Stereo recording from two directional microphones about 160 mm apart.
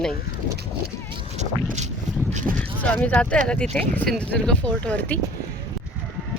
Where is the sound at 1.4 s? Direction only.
45° right (ahead or behind).